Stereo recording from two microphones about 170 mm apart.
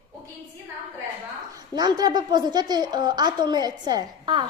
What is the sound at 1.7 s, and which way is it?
A woman's voice, 25° right (ahead or behind).